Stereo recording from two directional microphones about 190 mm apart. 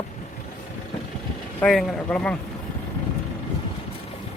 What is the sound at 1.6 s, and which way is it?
Speech, 5° left (ahead or behind).